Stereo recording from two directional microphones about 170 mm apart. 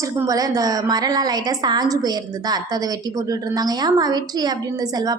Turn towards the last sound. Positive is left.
turn(degrees=-25)  # may be behind; listen again after turning